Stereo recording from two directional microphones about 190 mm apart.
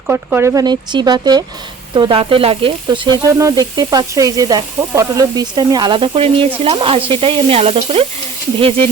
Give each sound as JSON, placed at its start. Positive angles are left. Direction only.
{"t": 0.1, "sound": "speech", "side_deg": -10}